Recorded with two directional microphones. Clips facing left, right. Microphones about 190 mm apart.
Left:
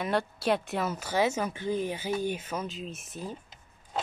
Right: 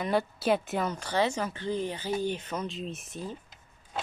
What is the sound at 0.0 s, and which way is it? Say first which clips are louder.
Speech: right 1 dB; centre (ahead or behind).